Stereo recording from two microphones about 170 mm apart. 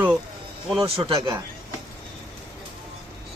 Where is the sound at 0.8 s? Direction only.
30° right (ahead or behind).